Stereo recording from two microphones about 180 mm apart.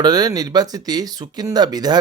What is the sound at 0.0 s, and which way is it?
Speech, 20° right (ahead or behind).